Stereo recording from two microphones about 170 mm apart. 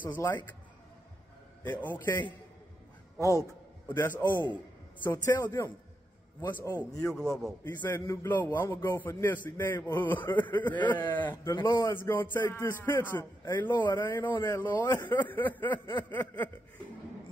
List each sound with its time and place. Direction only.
0.0 s a man's voice: 15° left (ahead or behind)
1.6 s a man's voice: 10° left (ahead or behind)